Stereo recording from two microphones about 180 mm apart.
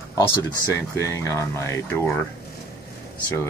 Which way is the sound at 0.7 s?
15° left (ahead or behind).